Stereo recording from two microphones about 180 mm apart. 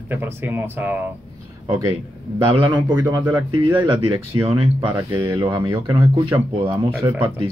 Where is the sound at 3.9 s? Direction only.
30° right (ahead or behind).